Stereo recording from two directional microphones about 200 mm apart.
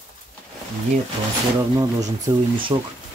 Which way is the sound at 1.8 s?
20° right (ahead or behind).